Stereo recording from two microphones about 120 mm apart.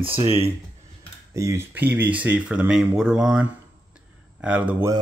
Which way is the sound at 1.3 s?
25° right (ahead or behind).